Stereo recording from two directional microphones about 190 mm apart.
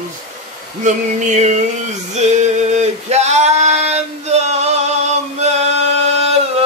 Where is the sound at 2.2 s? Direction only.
35° right (ahead or behind).